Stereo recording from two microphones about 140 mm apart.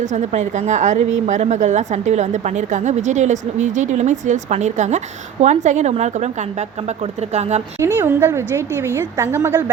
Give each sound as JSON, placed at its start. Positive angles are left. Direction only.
{"t": 0.0, "sound": "a woman's voice", "side_deg": -60}
{"t": 7.8, "sound": "a woman's voice", "side_deg": -15}